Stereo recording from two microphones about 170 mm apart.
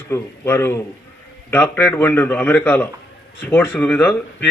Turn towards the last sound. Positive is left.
turn(degrees=10)  # may be behind; listen again after turning